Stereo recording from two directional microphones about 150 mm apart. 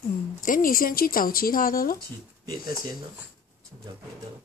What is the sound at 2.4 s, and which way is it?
Speech, 25° right (ahead or behind).